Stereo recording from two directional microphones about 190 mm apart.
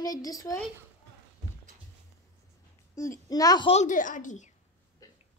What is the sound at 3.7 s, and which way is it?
Speech, 40° left (ahead or behind).